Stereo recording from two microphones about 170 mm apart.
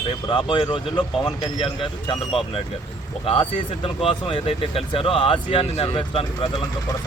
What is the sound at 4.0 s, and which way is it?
A man's voice, 35° left (ahead or behind).